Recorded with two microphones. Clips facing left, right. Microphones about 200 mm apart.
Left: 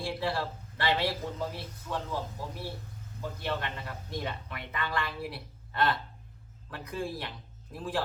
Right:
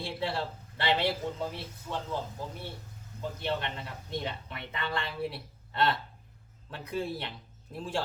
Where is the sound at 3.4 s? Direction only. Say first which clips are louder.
Right 1 dB; 25° right (ahead or behind).